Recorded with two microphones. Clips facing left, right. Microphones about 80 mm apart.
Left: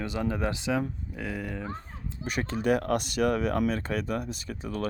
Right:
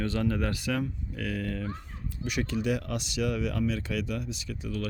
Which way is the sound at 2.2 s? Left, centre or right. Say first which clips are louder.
Left 1 dB; left.